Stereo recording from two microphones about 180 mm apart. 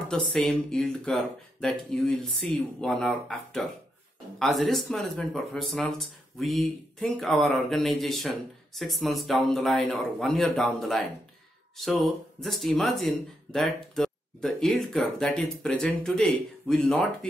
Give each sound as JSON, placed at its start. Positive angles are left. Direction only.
{"t": 0.1, "sound": "speech", "side_deg": 5}